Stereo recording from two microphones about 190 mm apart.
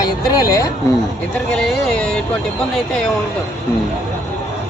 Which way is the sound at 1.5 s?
5° left (ahead or behind).